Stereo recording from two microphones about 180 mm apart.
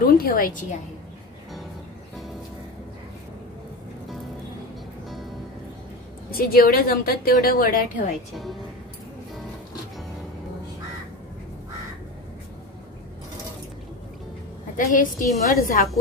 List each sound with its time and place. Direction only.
0.0 s a woman's voice: 55° left (ahead or behind)
6.3 s a woman's voice: 55° left (ahead or behind)
14.8 s a woman's voice: 50° left (ahead or behind)